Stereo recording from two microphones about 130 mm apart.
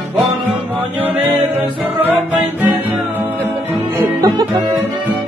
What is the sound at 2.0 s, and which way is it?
Music, 15° right (ahead or behind).